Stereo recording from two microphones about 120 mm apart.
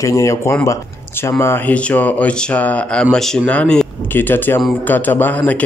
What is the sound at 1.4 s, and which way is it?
Speech, 15° left (ahead or behind).